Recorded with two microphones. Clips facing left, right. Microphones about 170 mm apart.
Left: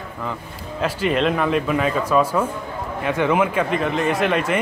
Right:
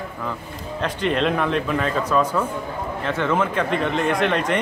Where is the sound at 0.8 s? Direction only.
5° left (ahead or behind).